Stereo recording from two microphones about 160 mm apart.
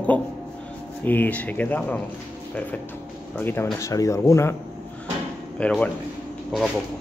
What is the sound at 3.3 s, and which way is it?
Speech, 10° left (ahead or behind).